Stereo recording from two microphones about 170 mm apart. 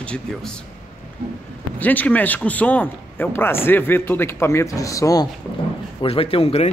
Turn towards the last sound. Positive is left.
turn(degrees=35)  # may be behind; listen again after turning